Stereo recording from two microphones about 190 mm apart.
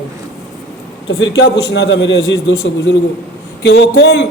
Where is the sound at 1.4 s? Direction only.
65° left (ahead or behind).